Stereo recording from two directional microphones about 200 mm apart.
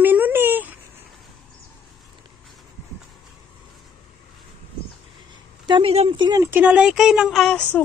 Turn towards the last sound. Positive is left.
turn(degrees=5)  # may be behind; listen again after turning